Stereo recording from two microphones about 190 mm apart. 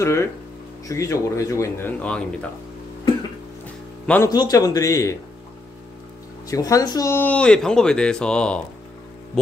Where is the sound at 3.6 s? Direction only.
10° left (ahead or behind).